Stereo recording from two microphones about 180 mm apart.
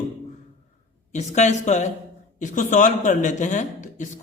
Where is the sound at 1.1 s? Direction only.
40° left (ahead or behind).